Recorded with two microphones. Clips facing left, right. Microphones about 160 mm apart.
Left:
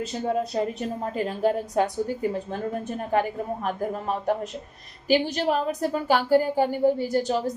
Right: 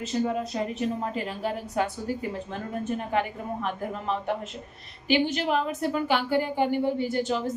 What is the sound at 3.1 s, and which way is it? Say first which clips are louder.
A woman's voice: left 8 dB; 45° left (ahead or behind).